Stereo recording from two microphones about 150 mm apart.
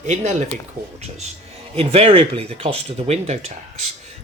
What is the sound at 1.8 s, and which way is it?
Speech, 40° right (ahead or behind).